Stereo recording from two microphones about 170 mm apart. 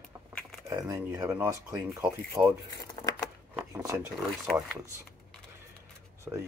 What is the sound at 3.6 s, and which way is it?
Speech, 10° right (ahead or behind).